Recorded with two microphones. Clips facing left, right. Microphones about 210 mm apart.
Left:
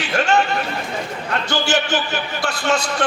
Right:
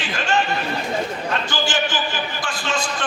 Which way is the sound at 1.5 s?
65° left (ahead or behind).